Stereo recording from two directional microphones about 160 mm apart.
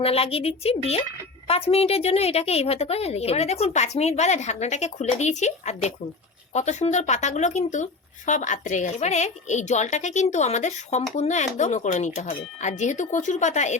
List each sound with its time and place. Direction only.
0.0 s a woman's voice: 40° left (ahead or behind)